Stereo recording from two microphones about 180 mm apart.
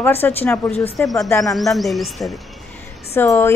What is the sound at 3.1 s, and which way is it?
Speech, 15° left (ahead or behind).